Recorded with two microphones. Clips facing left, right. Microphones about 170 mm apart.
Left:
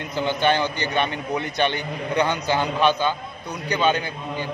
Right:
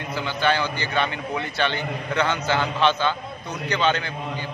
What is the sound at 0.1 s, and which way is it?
A man's voice, 20° left (ahead or behind).